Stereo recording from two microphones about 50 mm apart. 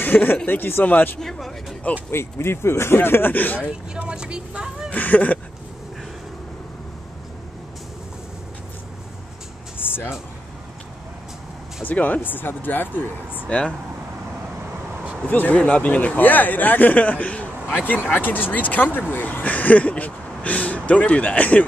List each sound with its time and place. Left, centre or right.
0.0 s speech: left
1.2 s speech: centre
2.0 s speech: left
3.9 s speech: centre
4.9 s speech: left
9.8 s music: left
11.8 s speech: left
13.5 s speech: left
15.2 s speech: left
15.5 s speech: left